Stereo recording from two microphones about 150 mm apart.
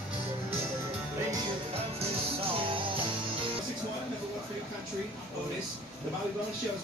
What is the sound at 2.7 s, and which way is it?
Music, 35° right (ahead or behind).